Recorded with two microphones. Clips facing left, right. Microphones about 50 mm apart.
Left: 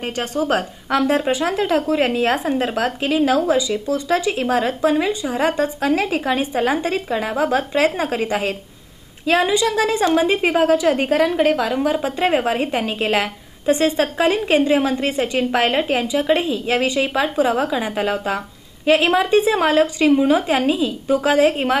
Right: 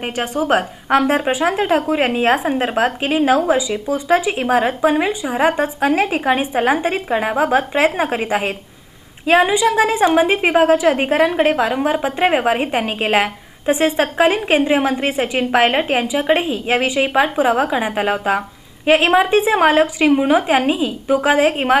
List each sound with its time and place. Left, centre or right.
0.1 s a woman's voice: centre; by 2.3 s right
2.3 s speech: centre
2.7 s a woman's voice: right
16.7 s a woman's voice: centre